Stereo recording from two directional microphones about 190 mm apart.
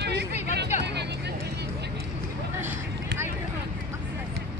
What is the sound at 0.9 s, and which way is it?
Vehicle, 60° right (ahead or behind).